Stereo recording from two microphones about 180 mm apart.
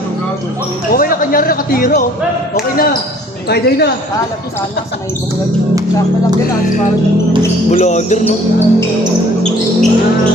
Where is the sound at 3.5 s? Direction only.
65° left (ahead or behind).